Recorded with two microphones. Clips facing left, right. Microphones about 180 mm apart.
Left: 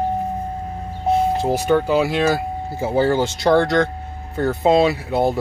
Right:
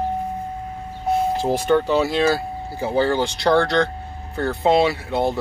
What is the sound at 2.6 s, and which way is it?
Speech, 25° left (ahead or behind).